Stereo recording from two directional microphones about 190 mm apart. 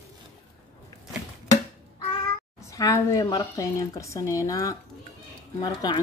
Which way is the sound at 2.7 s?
15° left (ahead or behind).